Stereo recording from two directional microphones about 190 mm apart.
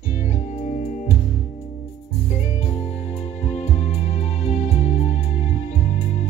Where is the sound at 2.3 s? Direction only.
35° left (ahead or behind).